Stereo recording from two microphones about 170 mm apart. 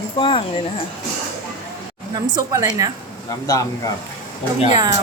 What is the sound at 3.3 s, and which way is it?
Speech, 20° left (ahead or behind).